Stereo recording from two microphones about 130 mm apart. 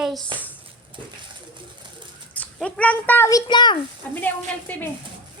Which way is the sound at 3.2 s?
30° left (ahead or behind).